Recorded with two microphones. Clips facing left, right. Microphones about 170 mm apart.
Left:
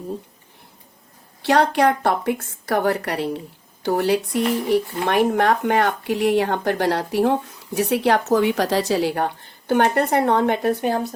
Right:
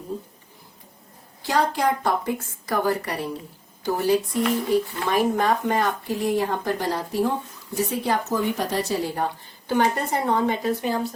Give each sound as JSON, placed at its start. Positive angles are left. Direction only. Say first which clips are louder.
{"t": 1.4, "sound": "speech", "louder": "left 6 dB", "side_deg": 70}